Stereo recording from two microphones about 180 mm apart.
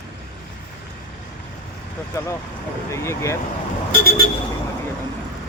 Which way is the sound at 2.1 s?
15° left (ahead or behind).